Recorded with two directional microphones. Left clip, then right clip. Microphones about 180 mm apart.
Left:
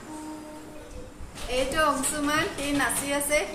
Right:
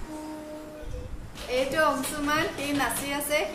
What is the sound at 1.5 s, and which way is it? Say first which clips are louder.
A woman's voice: even; 5° right (ahead or behind).